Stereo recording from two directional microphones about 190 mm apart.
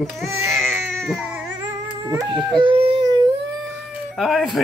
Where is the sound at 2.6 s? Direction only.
25° right (ahead or behind).